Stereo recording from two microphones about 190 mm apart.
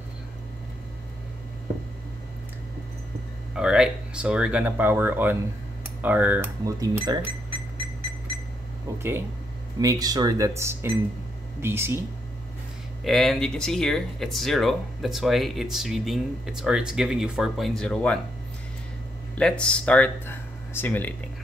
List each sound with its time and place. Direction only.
3.5 s speech: 5° right (ahead or behind)
9.8 s speech: 20° right (ahead or behind)
13.0 s speech: centre (ahead or behind)
19.3 s speech: 5° left (ahead or behind)